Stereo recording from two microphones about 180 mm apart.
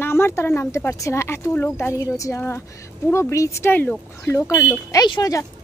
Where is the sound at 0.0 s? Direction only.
15° left (ahead or behind).